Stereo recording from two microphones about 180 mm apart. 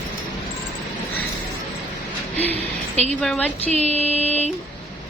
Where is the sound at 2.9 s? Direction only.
40° right (ahead or behind).